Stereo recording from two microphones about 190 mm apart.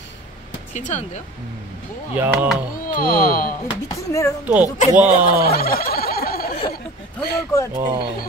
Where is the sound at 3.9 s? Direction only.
15° left (ahead or behind).